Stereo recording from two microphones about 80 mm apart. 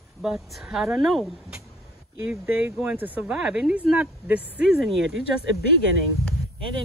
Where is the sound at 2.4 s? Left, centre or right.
Right.